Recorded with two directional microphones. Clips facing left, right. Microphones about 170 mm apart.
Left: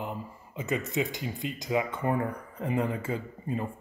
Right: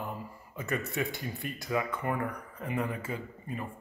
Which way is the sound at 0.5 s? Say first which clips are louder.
Left 3 dB; 20° left (ahead or behind).